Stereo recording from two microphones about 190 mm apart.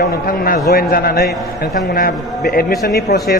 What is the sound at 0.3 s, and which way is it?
A man's voice, 50° left (ahead or behind).